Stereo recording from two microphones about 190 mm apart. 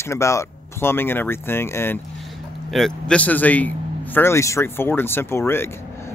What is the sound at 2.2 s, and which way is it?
Speech, centre (ahead or behind).